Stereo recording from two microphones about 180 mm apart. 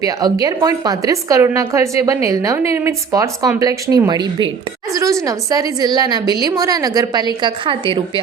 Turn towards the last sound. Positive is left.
turn(degrees=-30)  # may be behind; listen again after turning